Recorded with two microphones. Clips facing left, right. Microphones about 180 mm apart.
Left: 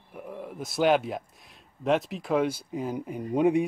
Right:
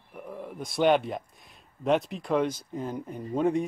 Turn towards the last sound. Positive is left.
turn(degrees=15)  # may be behind; listen again after turning